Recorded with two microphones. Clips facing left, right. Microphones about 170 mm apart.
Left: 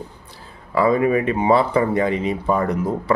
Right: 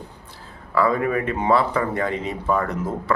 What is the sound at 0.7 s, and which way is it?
Speech, 15° left (ahead or behind).